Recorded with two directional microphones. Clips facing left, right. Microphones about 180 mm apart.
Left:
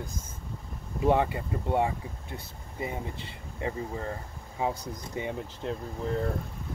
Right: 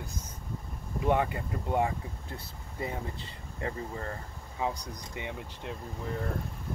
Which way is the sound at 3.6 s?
20° left (ahead or behind).